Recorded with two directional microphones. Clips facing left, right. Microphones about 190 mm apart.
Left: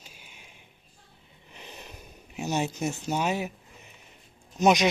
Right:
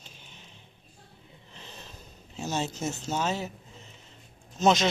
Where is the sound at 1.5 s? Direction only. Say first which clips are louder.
Left 2 dB; 15° left (ahead or behind).